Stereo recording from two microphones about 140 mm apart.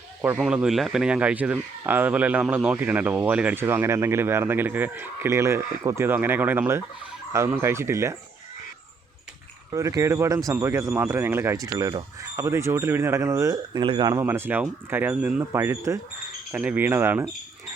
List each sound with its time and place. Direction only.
0.2 s speech: 10° right (ahead or behind)
9.7 s speech: 25° right (ahead or behind)
13.8 s speech: 35° right (ahead or behind)
14.1 s speech: 20° right (ahead or behind)